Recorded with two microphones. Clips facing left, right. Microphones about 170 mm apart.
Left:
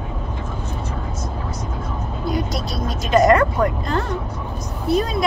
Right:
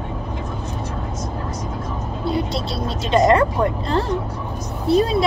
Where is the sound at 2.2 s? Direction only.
30° right (ahead or behind).